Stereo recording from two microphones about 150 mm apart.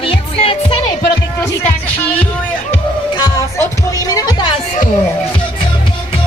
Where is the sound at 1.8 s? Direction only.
10° left (ahead or behind).